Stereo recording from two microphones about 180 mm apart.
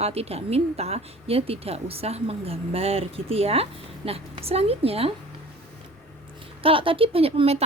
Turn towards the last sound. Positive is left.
turn(degrees=-35)  # may be behind; listen again after turning